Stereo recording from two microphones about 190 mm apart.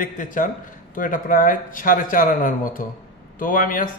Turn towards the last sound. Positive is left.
turn(degrees=45)  # may be behind; listen again after turning